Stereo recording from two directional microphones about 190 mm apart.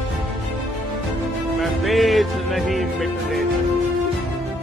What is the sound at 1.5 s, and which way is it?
A man's voice, centre (ahead or behind).